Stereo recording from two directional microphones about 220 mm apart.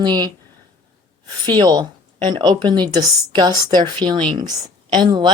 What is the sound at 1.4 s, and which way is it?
A woman's voice, 20° right (ahead or behind).